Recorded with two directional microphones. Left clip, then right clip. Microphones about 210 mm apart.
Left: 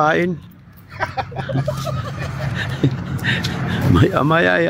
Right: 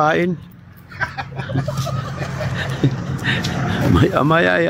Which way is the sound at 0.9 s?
25° left (ahead or behind).